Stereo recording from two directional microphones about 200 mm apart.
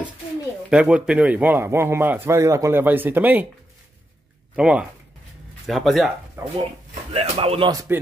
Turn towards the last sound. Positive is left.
turn(degrees=-20)  # may be behind; listen again after turning